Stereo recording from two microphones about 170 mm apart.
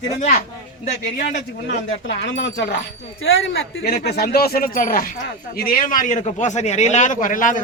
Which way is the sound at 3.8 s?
70° left (ahead or behind).